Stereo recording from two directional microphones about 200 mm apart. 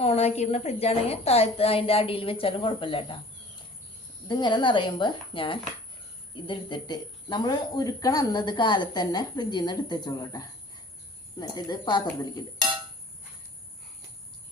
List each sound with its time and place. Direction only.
0.0 s speech: 30° left (ahead or behind)
4.3 s speech: 25° left (ahead or behind)